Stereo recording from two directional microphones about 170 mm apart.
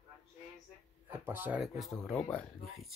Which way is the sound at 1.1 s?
10° right (ahead or behind).